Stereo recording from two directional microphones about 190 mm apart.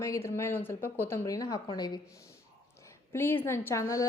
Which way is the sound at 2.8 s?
10° left (ahead or behind).